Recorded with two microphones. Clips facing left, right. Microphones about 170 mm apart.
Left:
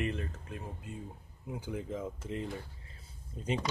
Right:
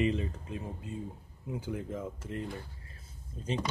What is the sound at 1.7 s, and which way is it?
Speech, 15° left (ahead or behind).